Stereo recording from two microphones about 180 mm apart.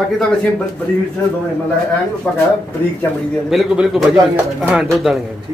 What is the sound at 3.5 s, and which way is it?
Speech, 5° right (ahead or behind).